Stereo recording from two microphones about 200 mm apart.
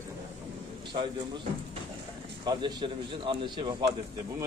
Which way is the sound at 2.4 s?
25° right (ahead or behind).